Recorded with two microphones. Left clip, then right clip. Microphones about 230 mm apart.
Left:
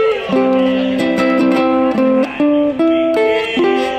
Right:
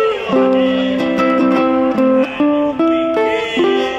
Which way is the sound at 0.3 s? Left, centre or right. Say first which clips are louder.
Even; left.